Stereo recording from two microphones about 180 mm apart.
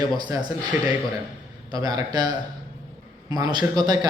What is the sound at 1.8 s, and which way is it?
Speech, 20° right (ahead or behind).